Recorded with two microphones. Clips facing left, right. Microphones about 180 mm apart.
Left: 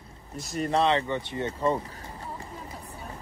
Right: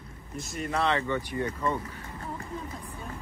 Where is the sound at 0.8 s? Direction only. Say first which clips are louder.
Even; 20° left (ahead or behind).